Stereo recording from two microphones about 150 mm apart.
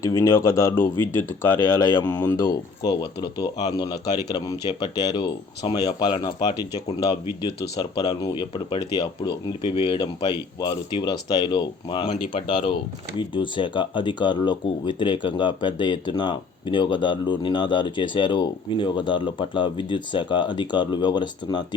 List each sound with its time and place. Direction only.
0.0 s speech: 20° left (ahead or behind)
1.8 s speech: 30° left (ahead or behind)
2.0 s speech: 10° left (ahead or behind)
2.5 s speech: 30° left (ahead or behind)
7.6 s speech: 25° left (ahead or behind)